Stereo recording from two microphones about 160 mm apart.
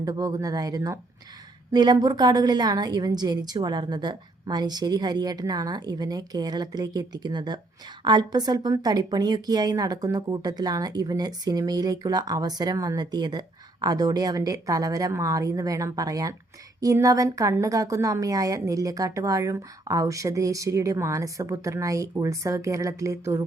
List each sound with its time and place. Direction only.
0.0 s a woman's voice: 20° right (ahead or behind)